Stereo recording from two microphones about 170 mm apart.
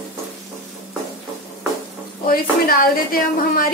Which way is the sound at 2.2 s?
60° left (ahead or behind).